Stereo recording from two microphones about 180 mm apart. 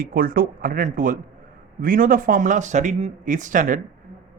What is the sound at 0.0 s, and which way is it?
Speech, 50° right (ahead or behind).